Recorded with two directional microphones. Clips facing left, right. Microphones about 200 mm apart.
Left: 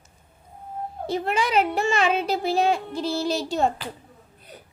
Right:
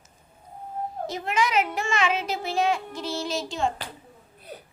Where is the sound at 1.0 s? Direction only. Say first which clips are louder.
Left 3 dB; 35° left (ahead or behind).